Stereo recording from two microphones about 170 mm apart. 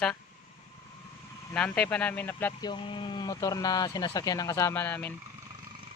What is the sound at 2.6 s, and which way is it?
Speech, 30° left (ahead or behind).